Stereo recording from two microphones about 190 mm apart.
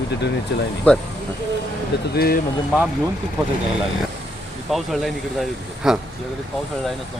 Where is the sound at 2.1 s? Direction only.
55° left (ahead or behind).